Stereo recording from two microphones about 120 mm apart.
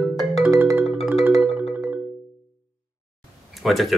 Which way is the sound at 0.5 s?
20° right (ahead or behind).